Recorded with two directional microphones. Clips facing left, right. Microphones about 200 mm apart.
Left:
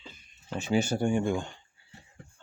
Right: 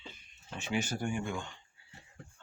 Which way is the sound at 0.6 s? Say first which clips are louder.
Left 7 dB; 30° left (ahead or behind).